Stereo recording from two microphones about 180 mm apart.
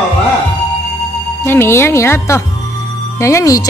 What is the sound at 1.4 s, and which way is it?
Speech, 15° left (ahead or behind).